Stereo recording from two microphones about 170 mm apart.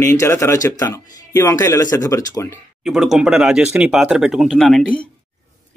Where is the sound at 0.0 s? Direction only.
15° left (ahead or behind).